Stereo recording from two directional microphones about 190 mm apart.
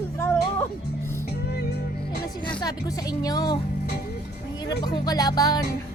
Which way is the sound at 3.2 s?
20° left (ahead or behind).